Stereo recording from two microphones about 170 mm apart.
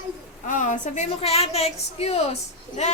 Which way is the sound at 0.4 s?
50° left (ahead or behind).